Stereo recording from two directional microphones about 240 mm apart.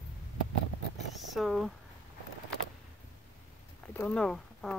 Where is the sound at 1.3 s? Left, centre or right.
Centre.